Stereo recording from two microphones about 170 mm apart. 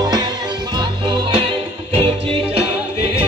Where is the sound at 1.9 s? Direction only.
35° right (ahead or behind).